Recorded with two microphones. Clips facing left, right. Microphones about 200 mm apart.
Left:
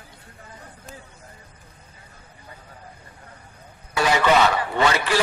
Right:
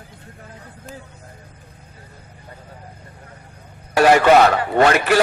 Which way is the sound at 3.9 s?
60° right (ahead or behind).